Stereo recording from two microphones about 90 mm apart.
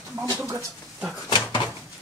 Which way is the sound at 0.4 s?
35° right (ahead or behind).